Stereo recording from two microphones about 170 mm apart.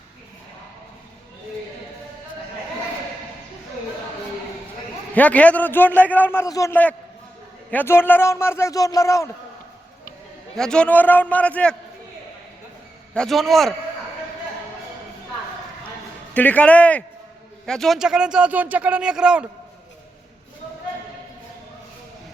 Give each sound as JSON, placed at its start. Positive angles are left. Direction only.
{"t": 5.1, "sound": "a man's voice", "side_deg": 10}
{"t": 10.6, "sound": "a man's voice", "side_deg": 5}
{"t": 13.1, "sound": "speech", "side_deg": 0}
{"t": 16.3, "sound": "a man's voice", "side_deg": 10}